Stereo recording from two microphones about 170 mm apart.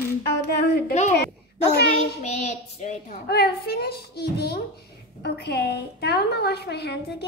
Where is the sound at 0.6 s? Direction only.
70° left (ahead or behind).